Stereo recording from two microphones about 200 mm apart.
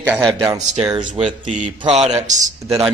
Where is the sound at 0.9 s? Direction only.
25° right (ahead or behind).